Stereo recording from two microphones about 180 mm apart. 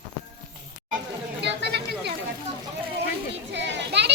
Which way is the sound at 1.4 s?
70° right (ahead or behind).